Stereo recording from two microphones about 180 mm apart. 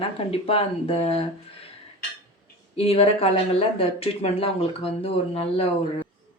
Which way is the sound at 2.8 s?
35° left (ahead or behind).